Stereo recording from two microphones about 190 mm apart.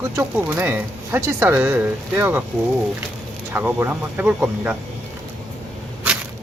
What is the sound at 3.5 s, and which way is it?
Speech, 10° right (ahead or behind).